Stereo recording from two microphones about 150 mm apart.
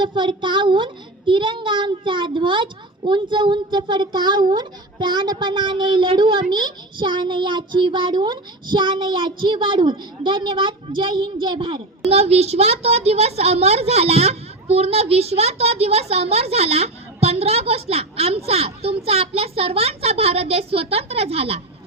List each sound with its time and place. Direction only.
0.0 s a child's voice: 30° right (ahead or behind)